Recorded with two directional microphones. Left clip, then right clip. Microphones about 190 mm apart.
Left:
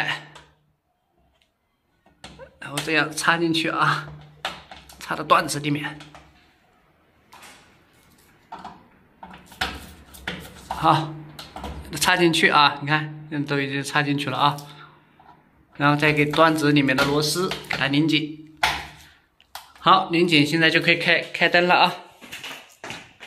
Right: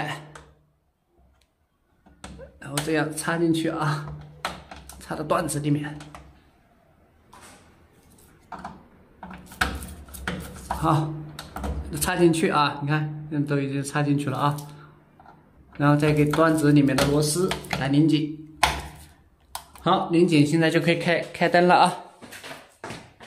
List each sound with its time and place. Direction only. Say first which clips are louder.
0.0 s a sound: left 6 dB; 15° right (ahead or behind)
2.6 s a man's voice: left 3 dB; 5° right (ahead or behind)
5.0 s a man's voice: left 6 dB; centre (ahead or behind)
10.8 s a man's voice: left 6 dB; 5° right (ahead or behind)
15.8 s a man's voice: left 2 dB; 5° right (ahead or behind)
19.8 s a man's voice: left 4 dB; 5° right (ahead or behind)